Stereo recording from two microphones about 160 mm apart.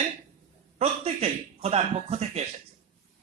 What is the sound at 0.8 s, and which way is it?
A man's voice, 40° right (ahead or behind).